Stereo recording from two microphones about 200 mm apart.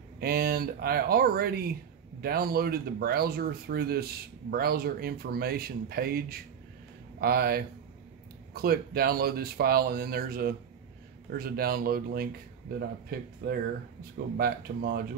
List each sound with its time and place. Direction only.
0.2 s speech: 50° right (ahead or behind)